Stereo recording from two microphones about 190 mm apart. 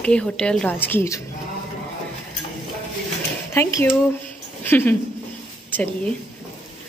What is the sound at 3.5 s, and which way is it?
Speech, 15° left (ahead or behind).